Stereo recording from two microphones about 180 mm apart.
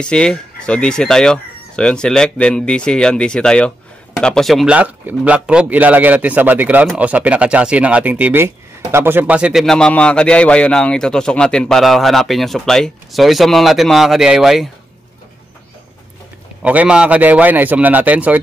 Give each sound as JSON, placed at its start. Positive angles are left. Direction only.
{"t": 0.0, "sound": "a man's voice", "side_deg": 5}
{"t": 16.6, "sound": "a man's voice", "side_deg": -5}